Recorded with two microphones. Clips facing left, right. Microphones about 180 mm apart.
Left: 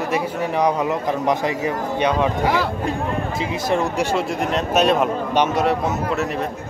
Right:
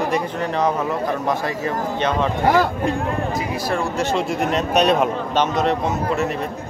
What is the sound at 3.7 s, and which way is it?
Speech, 20° left (ahead or behind).